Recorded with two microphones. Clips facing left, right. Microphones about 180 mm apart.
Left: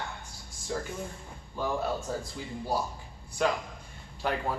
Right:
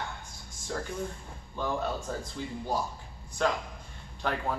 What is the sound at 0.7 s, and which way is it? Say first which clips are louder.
Speech: left 1 dB; 5° left (ahead or behind).